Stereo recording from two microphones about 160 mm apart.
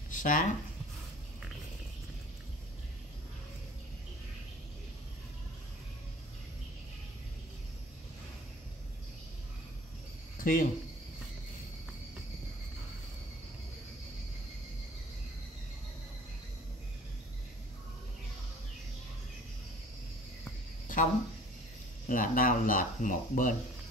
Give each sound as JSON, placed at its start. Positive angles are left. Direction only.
{"t": 0.1, "sound": "speech", "side_deg": 55}
{"t": 10.4, "sound": "speech", "side_deg": 60}
{"t": 20.9, "sound": "cricket", "side_deg": 55}
{"t": 22.0, "sound": "speech", "side_deg": 60}